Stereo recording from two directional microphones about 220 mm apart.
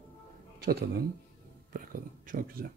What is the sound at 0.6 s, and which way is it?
Speech, 45° right (ahead or behind).